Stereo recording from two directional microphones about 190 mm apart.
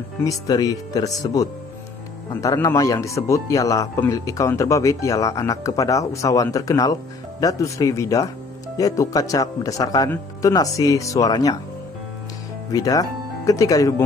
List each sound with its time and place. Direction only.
0.2 s a man's voice: 20° left (ahead or behind)
12.7 s a man's voice: 20° left (ahead or behind)